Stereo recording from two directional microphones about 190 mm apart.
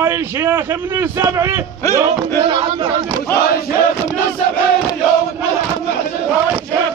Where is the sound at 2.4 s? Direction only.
30° right (ahead or behind).